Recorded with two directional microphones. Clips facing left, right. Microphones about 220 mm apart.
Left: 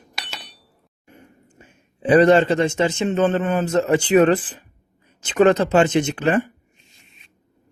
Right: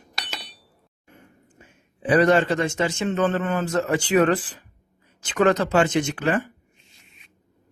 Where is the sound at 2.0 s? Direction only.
25° left (ahead or behind).